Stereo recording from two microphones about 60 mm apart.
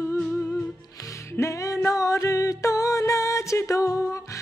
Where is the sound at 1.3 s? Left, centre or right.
Left.